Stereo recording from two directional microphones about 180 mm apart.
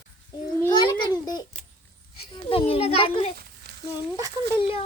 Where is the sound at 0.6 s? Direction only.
25° left (ahead or behind).